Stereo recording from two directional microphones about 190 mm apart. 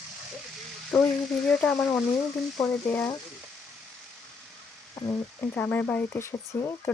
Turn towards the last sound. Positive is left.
turn(degrees=15)  # may be behind; listen again after turning